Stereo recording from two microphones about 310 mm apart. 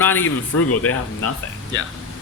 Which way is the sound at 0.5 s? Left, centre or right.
Left.